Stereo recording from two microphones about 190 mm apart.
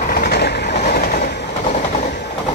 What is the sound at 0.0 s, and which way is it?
Train, 50° left (ahead or behind).